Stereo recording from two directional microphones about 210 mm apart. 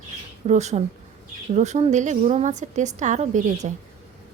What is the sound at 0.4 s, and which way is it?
A woman's voice, 35° right (ahead or behind).